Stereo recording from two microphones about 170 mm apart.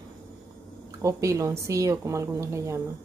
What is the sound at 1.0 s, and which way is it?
Speech, 20° right (ahead or behind).